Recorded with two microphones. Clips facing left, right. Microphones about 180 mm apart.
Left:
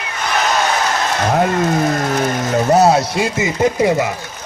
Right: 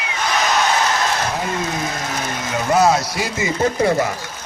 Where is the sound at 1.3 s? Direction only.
60° left (ahead or behind).